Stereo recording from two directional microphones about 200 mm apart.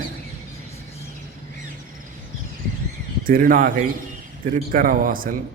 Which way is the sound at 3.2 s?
45° right (ahead or behind).